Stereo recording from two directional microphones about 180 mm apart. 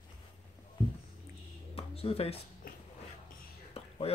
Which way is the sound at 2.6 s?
55° left (ahead or behind).